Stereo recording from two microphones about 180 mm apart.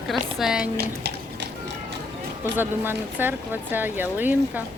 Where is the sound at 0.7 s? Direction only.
65° right (ahead or behind).